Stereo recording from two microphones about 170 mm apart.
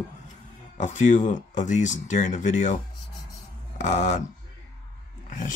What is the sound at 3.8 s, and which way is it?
Speech, 45° left (ahead or behind).